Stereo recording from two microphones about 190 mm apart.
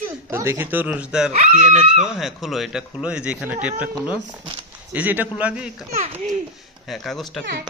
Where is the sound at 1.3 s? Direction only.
35° right (ahead or behind).